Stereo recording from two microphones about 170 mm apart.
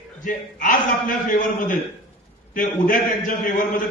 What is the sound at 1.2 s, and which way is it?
A man's voice, 50° left (ahead or behind).